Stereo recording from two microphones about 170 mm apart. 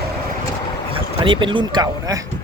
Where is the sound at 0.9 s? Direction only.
30° right (ahead or behind).